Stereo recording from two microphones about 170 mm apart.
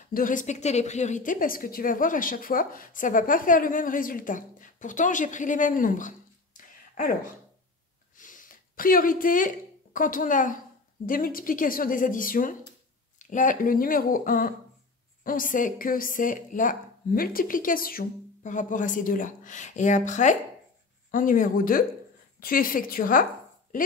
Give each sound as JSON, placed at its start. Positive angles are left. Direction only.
{"t": 0.1, "sound": "a woman's voice", "side_deg": 50}
{"t": 8.2, "sound": "a sound", "side_deg": 50}
{"t": 9.9, "sound": "a woman's voice", "side_deg": 55}